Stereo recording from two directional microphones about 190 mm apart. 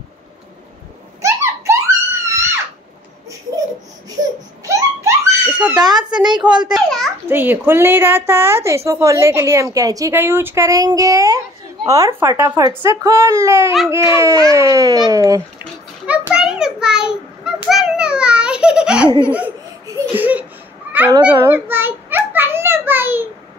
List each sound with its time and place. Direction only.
1.2 s a sound: 15° right (ahead or behind)
2.2 s music: 15° right (ahead or behind)
4.6 s giggle: 10° right (ahead or behind)
5.8 s a child's voice: 20° right (ahead or behind)
6.7 s a child's voice: centre (ahead or behind)
7.2 s speech: 10° right (ahead or behind)
16.1 s a sound: 5° right (ahead or behind)
19.2 s speech: 10° right (ahead or behind)
19.9 s crying: 10° right (ahead or behind)
20.9 s a sound: 10° right (ahead or behind)